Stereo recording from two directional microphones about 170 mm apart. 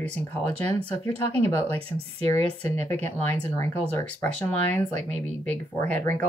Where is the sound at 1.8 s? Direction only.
35° right (ahead or behind).